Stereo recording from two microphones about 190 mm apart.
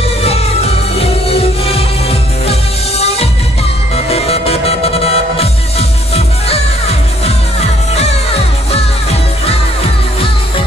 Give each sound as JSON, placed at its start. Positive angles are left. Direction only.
{"t": 0.9, "sound": "music", "side_deg": 30}
{"t": 3.9, "sound": "music", "side_deg": 30}